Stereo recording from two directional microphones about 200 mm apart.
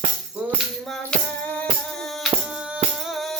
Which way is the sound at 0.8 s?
5° left (ahead or behind).